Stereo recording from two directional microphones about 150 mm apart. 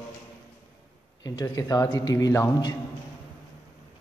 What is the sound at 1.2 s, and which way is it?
A man's voice, 25° left (ahead or behind).